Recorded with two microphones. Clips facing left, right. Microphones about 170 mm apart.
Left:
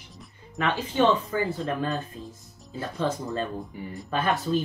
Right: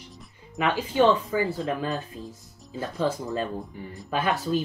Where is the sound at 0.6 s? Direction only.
10° right (ahead or behind).